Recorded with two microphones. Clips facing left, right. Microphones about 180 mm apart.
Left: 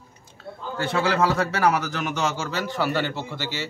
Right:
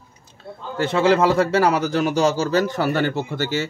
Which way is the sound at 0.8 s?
25° right (ahead or behind).